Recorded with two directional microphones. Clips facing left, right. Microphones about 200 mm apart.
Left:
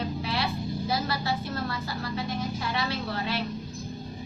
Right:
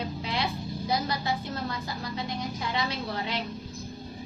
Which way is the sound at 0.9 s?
20° right (ahead or behind).